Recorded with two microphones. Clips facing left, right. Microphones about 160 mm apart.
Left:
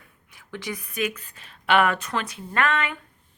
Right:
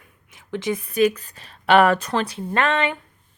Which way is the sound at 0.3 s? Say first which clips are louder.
Right 8 dB; 20° right (ahead or behind).